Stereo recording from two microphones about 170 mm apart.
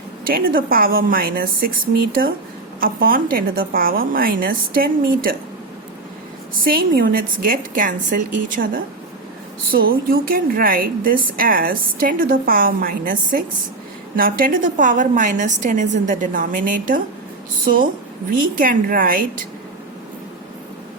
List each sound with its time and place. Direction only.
0.3 s a woman's voice: 60° right (ahead or behind)
6.7 s a woman's voice: 60° right (ahead or behind)
18.5 s a woman's voice: 55° right (ahead or behind)